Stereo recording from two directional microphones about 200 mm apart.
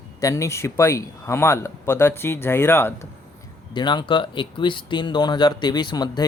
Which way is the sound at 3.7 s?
20° left (ahead or behind).